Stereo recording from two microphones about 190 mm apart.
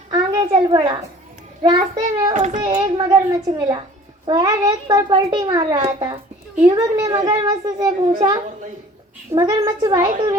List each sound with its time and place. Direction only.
0.1 s a sound: 20° right (ahead or behind)
1.6 s a child's voice: 25° right (ahead or behind)
2.3 s speech: 40° right (ahead or behind)
2.6 s a child's voice: 20° right (ahead or behind)
9.3 s a child's voice: 20° right (ahead or behind)